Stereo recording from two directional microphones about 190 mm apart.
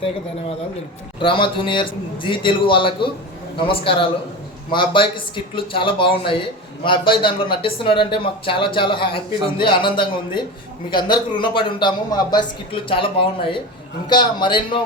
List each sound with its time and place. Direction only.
1.2 s speech: 25° left (ahead or behind)